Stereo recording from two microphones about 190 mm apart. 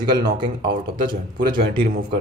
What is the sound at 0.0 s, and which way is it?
Speech, 20° right (ahead or behind).